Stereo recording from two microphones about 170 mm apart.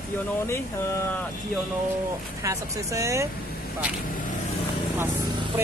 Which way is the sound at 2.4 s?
20° right (ahead or behind).